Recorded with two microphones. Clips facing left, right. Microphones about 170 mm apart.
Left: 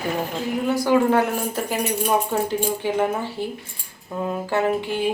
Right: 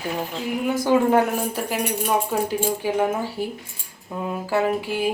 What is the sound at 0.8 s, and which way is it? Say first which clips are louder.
Speech: right 1 dB; 15° right (ahead or behind).